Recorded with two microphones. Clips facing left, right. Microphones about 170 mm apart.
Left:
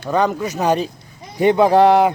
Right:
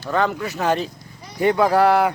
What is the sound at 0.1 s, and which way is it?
Speech, 20° left (ahead or behind).